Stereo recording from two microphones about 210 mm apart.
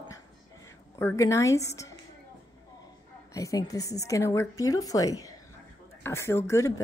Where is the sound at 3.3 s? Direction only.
15° left (ahead or behind).